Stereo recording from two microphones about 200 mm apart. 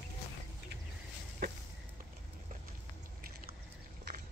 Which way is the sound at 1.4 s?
50° right (ahead or behind).